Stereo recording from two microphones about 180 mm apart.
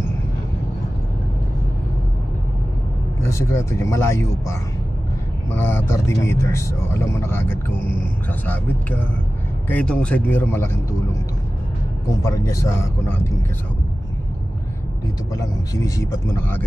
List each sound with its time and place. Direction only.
3.2 s speech: 15° left (ahead or behind)
5.6 s speech: 15° left (ahead or behind)
12.1 s speech: 15° left (ahead or behind)
15.3 s speech: 20° left (ahead or behind)